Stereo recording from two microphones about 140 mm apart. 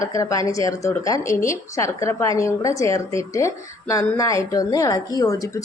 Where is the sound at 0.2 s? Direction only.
25° left (ahead or behind).